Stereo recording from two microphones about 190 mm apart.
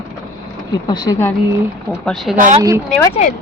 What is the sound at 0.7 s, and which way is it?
Speech, 20° left (ahead or behind).